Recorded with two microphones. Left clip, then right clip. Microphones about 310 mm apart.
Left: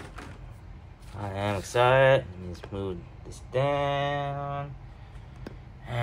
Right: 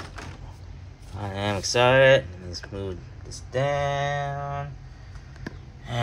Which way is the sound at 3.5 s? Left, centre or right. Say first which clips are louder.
Right 1 dB; centre.